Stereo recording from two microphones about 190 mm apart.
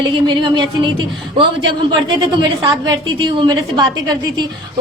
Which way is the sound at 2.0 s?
25° right (ahead or behind).